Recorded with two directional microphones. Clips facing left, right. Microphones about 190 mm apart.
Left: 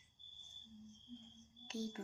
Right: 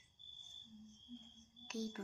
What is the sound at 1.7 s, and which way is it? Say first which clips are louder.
Music: even; 25° left (ahead or behind).